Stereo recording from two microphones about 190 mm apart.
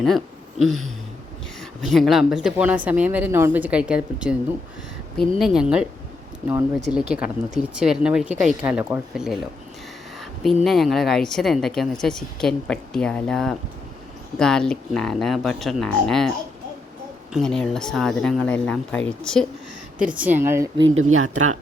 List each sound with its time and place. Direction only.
0.6 s a woman's voice: centre (ahead or behind)
5.4 s a woman's voice: 5° right (ahead or behind)
10.4 s a woman's voice: centre (ahead or behind)
17.3 s a woman's voice: 5° left (ahead or behind)
20.0 s speech: 5° right (ahead or behind)
20.8 s speech: 90° right